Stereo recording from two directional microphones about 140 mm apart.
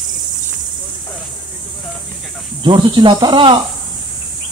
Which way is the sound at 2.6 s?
35° right (ahead or behind).